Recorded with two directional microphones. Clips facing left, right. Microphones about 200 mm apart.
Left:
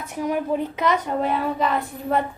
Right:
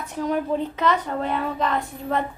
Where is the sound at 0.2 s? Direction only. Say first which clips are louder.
Even; 10° left (ahead or behind).